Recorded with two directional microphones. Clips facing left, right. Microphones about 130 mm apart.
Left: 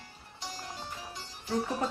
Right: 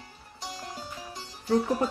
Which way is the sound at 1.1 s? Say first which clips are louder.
Right 9 dB; 40° right (ahead or behind).